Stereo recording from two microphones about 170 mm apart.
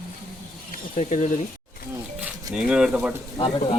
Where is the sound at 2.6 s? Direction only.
5° right (ahead or behind).